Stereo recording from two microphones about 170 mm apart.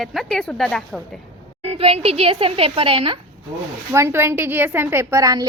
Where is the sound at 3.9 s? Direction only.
15° right (ahead or behind).